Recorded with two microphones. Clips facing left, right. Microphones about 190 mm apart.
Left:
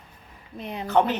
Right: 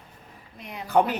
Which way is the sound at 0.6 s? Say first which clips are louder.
Left 5 dB; 30° left (ahead or behind).